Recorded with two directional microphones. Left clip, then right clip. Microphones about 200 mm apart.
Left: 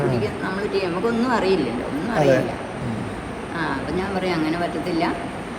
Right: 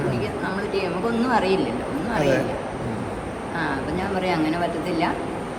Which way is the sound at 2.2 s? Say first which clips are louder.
Left 4 dB; 20° left (ahead or behind).